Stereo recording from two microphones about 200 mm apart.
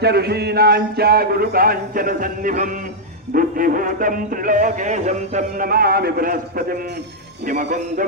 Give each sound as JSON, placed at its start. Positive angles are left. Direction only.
{"t": 0.0, "sound": "music", "side_deg": -55}
{"t": 7.4, "sound": "a man's voice", "side_deg": -40}